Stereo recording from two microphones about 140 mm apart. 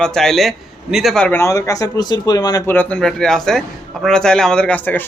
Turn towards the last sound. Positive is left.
turn(degrees=10)  # may be behind; listen again after turning